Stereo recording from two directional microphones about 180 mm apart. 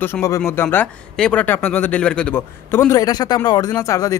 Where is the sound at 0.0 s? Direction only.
15° left (ahead or behind).